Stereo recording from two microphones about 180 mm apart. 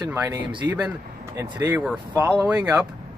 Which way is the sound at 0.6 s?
10° right (ahead or behind).